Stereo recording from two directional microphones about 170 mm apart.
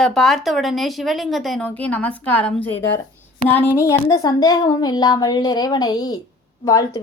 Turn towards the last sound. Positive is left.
turn(degrees=20)  # may be behind; listen again after turning